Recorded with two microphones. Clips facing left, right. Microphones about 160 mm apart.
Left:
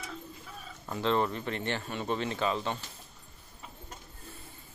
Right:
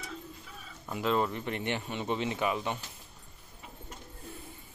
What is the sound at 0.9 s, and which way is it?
Speech, 10° right (ahead or behind).